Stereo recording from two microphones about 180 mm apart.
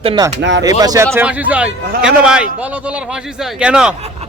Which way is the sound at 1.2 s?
10° right (ahead or behind).